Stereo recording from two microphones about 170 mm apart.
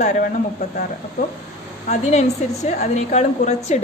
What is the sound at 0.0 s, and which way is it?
Speech, 45° left (ahead or behind).